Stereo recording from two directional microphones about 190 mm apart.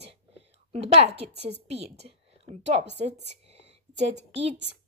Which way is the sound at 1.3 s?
60° right (ahead or behind).